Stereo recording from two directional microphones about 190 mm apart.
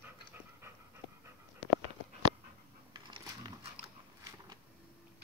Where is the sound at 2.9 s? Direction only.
25° right (ahead or behind).